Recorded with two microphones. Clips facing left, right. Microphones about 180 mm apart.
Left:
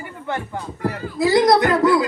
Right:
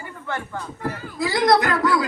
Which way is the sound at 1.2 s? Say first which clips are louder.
Left 4 dB; 20° left (ahead or behind).